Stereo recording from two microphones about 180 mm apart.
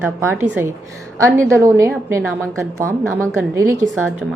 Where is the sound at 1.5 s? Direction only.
15° right (ahead or behind).